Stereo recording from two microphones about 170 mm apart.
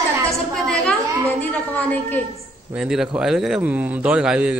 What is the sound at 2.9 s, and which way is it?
A man's voice, 5° right (ahead or behind).